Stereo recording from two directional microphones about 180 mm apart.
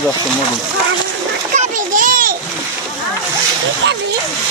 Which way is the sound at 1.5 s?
45° right (ahead or behind).